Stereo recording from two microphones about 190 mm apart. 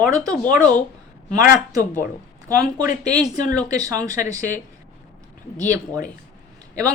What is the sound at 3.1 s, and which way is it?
A woman's voice, 20° right (ahead or behind).